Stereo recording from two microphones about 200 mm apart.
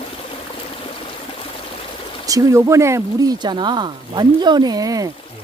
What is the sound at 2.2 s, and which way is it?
Speech, 15° right (ahead or behind).